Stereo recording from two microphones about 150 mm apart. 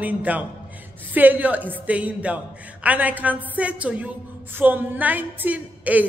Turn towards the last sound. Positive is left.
turn(degrees=-10)  # may be behind; listen again after turning